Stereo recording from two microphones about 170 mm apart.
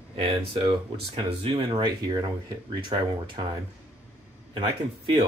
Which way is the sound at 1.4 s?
30° right (ahead or behind).